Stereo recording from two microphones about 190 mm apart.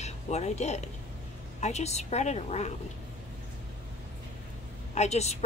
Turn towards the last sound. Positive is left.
turn(degrees=35)  # may be behind; listen again after turning